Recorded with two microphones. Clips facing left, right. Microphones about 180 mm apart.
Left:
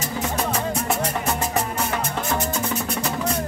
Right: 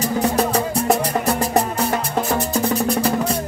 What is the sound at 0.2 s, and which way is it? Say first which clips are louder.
Music: right 5 dB; 35° right (ahead or behind).